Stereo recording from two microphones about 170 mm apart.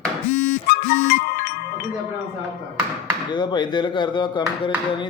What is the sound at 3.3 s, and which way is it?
Speech, 25° left (ahead or behind).